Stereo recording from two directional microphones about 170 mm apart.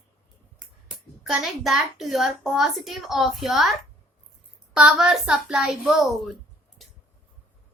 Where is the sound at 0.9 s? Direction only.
5° right (ahead or behind).